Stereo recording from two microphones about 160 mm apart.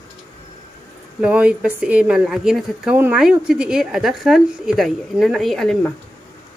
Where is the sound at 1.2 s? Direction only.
10° right (ahead or behind).